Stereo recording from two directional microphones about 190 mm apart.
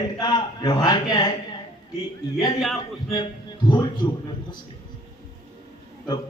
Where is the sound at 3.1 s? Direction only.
25° left (ahead or behind).